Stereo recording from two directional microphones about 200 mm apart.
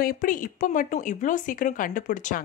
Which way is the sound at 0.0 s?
45° left (ahead or behind).